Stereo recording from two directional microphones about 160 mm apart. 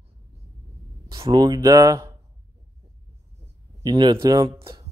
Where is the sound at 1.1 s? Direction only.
30° right (ahead or behind).